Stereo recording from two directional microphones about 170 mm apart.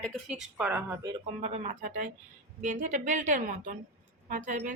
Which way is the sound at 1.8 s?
50° right (ahead or behind).